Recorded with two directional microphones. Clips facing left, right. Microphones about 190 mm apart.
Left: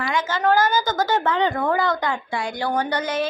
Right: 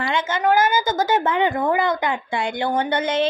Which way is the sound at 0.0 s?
25° right (ahead or behind).